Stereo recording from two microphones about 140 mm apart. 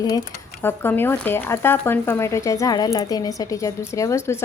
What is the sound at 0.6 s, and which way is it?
Speech, 15° left (ahead or behind).